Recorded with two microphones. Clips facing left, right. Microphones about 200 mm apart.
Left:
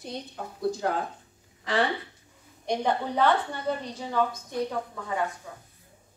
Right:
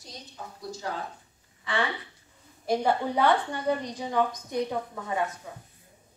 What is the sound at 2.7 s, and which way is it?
A woman's voice, 10° right (ahead or behind).